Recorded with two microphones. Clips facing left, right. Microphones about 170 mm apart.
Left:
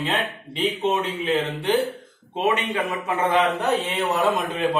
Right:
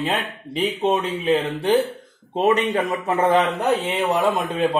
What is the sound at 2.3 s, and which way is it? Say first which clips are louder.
Speech: right 4 dB; 35° right (ahead or behind).